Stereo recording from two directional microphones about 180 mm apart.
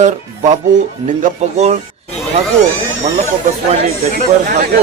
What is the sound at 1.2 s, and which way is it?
Speech, 40° right (ahead or behind).